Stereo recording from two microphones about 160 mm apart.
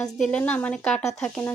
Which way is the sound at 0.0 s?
5° left (ahead or behind).